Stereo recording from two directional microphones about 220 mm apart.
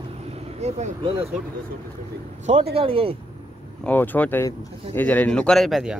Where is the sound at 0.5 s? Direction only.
30° right (ahead or behind).